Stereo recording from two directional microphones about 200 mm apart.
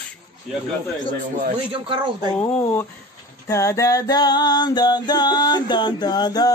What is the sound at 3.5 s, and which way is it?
Music, 15° left (ahead or behind).